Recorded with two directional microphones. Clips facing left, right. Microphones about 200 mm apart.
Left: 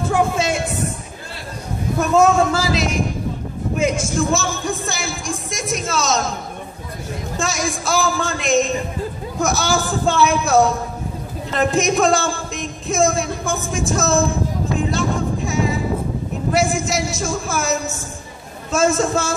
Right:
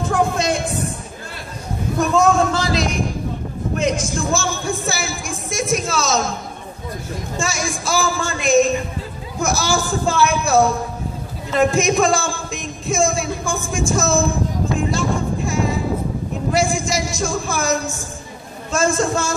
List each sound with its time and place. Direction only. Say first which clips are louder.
0.1 s a sound: even; 5° left (ahead or behind)
2.0 s speech: left 1 dB; 5° left (ahead or behind)
7.3 s speech: left 1 dB; centre (ahead or behind)
14.8 s music: left 1 dB; centre (ahead or behind)
16.5 s speech: left 1 dB; 5° left (ahead or behind)